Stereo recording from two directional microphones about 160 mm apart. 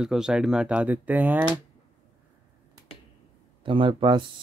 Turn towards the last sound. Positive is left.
turn(degrees=-30)  # may be behind; listen again after turning